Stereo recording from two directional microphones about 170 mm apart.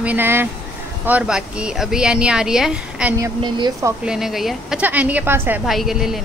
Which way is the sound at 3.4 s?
20° right (ahead or behind).